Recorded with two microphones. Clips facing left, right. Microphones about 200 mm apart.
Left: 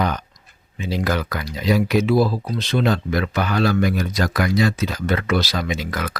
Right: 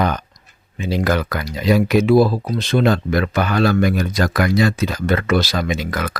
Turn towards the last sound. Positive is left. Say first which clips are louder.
# right 3 dB
turn(degrees=-50)  # may be behind; listen again after turning